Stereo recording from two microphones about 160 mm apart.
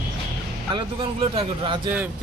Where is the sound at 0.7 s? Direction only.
35° right (ahead or behind).